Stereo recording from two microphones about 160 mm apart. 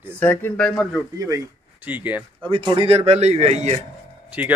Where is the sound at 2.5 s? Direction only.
30° right (ahead or behind).